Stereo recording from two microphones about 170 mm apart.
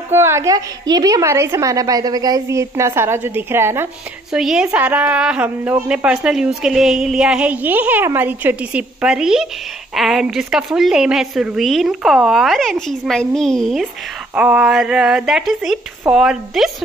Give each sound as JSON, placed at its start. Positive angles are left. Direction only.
{"t": 0.1, "sound": "a woman's voice", "side_deg": -15}
{"t": 4.3, "sound": "a woman's voice", "side_deg": -5}